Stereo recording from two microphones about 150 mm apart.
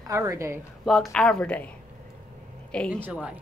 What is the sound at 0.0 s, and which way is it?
Speech, 20° right (ahead or behind).